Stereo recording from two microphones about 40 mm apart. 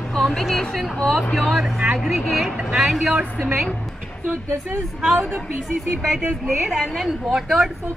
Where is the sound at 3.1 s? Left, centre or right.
Right.